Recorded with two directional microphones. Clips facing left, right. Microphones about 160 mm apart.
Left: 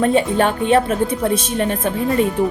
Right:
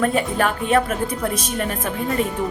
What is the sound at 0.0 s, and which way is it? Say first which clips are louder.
Speech: left 4 dB; 25° left (ahead or behind).